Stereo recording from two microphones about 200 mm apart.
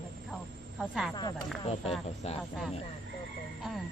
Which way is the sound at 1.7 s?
30° left (ahead or behind).